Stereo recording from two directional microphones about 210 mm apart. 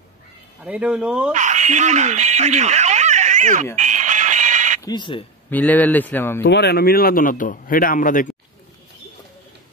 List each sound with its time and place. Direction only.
0.7 s speech: 5° right (ahead or behind)
1.3 s speech: 35° right (ahead or behind)
3.7 s a sound: 35° right (ahead or behind)
4.8 s speech: 20° left (ahead or behind)
5.5 s speech: 10° left (ahead or behind)
6.4 s a man's voice: 55° left (ahead or behind)